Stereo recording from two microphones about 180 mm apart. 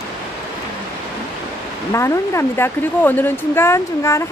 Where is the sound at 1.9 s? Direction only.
15° left (ahead or behind).